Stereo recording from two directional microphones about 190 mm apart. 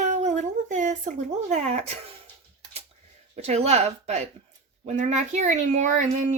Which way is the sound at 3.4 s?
35° right (ahead or behind).